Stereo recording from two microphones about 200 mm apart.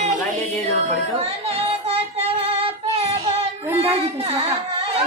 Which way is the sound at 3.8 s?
30° right (ahead or behind).